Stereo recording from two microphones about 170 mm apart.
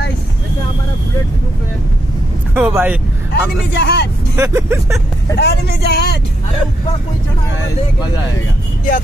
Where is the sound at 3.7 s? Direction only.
75° left (ahead or behind).